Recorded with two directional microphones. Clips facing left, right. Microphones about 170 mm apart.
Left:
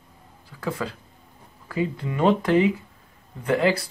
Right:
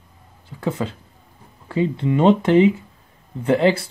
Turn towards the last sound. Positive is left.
turn(degrees=-25)  # may be behind; listen again after turning